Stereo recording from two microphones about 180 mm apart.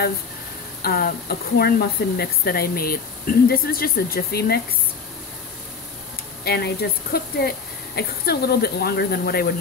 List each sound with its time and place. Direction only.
0.8 s speech: 55° left (ahead or behind)
6.4 s speech: 65° left (ahead or behind)